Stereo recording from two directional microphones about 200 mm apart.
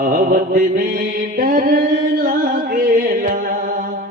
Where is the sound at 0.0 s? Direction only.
45° right (ahead or behind).